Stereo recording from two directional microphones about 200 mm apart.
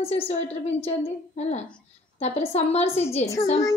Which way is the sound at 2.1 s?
35° left (ahead or behind).